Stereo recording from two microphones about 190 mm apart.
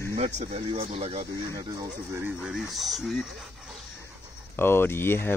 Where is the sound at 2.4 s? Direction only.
Centre (ahead or behind).